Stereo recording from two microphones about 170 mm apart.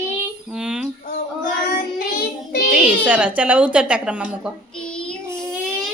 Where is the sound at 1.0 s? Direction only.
50° left (ahead or behind).